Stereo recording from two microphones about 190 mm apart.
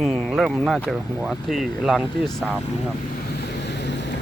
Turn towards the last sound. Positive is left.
turn(degrees=65)  # may be behind; listen again after turning